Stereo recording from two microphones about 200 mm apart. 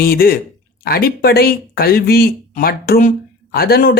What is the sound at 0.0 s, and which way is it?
Speech, 50° left (ahead or behind).